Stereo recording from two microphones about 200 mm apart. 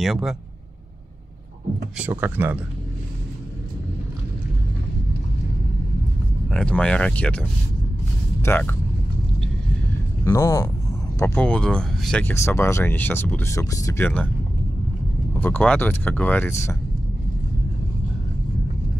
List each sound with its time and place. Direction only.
0.0 s speech: centre (ahead or behind)
2.0 s speech: 10° right (ahead or behind)
6.5 s speech: 5° left (ahead or behind)
10.2 s speech: 15° left (ahead or behind)
15.4 s speech: 10° left (ahead or behind)